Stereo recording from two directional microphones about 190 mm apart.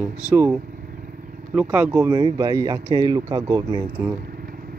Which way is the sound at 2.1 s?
20° right (ahead or behind).